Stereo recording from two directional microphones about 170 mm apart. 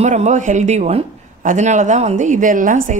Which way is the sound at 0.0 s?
45° right (ahead or behind).